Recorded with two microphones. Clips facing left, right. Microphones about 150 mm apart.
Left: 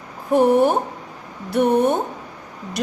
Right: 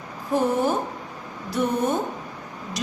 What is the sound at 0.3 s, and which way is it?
Speech, 65° left (ahead or behind).